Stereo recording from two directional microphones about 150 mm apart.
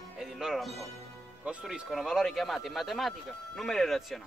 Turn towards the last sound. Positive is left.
turn(degrees=0)  # may be behind; listen again after turning